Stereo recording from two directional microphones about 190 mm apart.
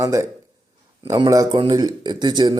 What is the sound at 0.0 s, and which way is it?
A man's voice, 15° right (ahead or behind).